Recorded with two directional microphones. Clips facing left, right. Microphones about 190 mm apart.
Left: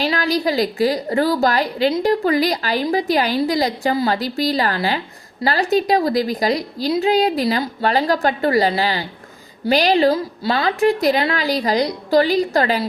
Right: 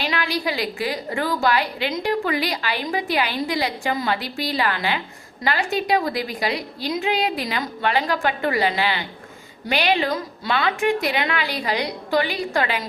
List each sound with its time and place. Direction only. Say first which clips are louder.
0.0 s a woman's voice: left 6 dB; 35° left (ahead or behind)